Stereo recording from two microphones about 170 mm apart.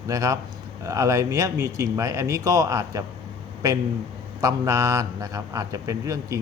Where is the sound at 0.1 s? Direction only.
20° right (ahead or behind).